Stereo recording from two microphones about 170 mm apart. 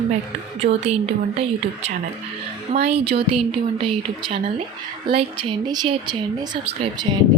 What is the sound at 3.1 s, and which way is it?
Speech, 35° right (ahead or behind).